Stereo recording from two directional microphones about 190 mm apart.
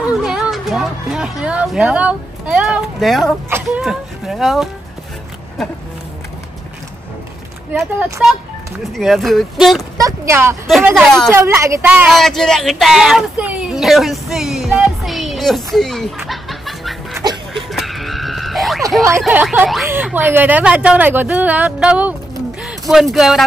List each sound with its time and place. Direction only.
0.2 s music: centre (ahead or behind)
1.4 s speech: 5° right (ahead or behind)
3.4 s speech: 10° right (ahead or behind)
3.8 s speech: centre (ahead or behind)
7.7 s speech: 5° right (ahead or behind)
9.9 s a sound: 15° right (ahead or behind)
11.0 s speech: centre (ahead or behind)
11.3 s speech: 15° right (ahead or behind)
17.2 s a sound: 20° right (ahead or behind)
17.6 s music: centre (ahead or behind)
19.2 s speech: 5° right (ahead or behind)
22.6 s a sound: 5° right (ahead or behind)
23.1 s speech: centre (ahead or behind)